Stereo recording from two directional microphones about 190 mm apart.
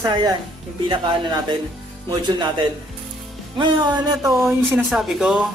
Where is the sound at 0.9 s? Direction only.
25° right (ahead or behind).